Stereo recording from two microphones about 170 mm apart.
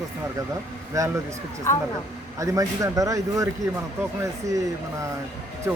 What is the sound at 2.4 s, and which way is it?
Speech, 20° right (ahead or behind).